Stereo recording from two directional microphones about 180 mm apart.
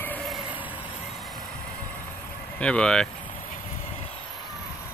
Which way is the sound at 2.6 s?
5° left (ahead or behind).